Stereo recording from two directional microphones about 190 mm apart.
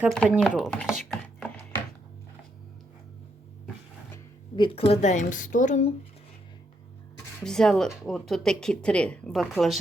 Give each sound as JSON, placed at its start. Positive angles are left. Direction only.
{"t": 0.3, "sound": "speech", "side_deg": 0}
{"t": 1.1, "sound": "a sound", "side_deg": 5}
{"t": 4.5, "sound": "a woman's voice", "side_deg": 30}
{"t": 7.3, "sound": "speech", "side_deg": 5}